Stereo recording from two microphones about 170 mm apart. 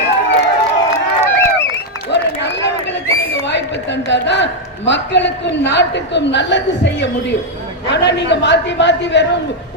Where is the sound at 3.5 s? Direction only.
90° left.